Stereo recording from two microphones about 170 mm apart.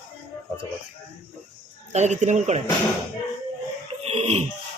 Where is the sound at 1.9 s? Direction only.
45° right (ahead or behind).